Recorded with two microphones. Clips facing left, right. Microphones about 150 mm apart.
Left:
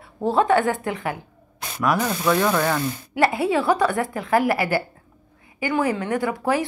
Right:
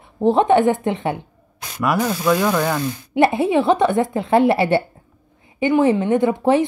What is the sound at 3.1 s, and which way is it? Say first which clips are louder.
Speech: right 4 dB; 25° right (ahead or behind).